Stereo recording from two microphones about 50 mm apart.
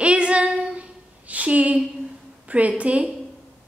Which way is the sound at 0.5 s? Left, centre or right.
Centre.